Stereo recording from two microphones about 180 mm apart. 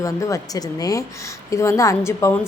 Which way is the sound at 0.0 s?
20° left (ahead or behind).